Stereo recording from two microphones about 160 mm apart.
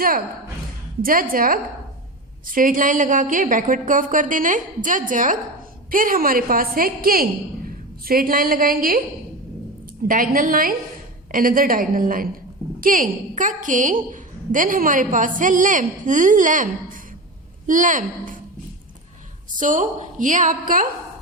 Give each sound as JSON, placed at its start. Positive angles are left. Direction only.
{"t": 1.0, "sound": "a woman's voice", "side_deg": -60}
{"t": 10.1, "sound": "a woman's voice", "side_deg": -60}
{"t": 19.5, "sound": "a woman's voice", "side_deg": -55}